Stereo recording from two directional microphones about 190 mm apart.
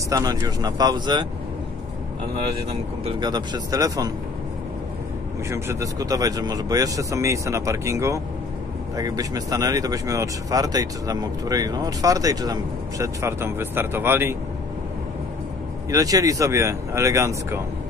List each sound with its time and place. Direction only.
0.1 s speech: 20° right (ahead or behind)
3.2 s speech: 20° right (ahead or behind)
5.5 s speech: 15° right (ahead or behind)
15.9 s speech: 20° right (ahead or behind)